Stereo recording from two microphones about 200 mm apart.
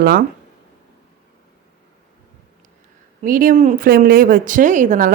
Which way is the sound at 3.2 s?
40° right (ahead or behind).